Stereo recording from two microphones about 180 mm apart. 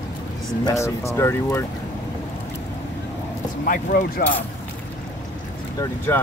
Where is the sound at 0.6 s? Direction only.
15° left (ahead or behind).